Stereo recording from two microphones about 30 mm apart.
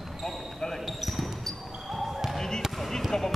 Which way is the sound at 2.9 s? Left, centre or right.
Centre.